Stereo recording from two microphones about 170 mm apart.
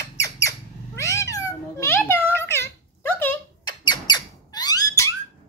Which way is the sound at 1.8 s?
15° left (ahead or behind).